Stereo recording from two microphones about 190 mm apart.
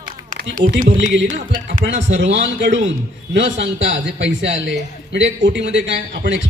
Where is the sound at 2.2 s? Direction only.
70° right (ahead or behind).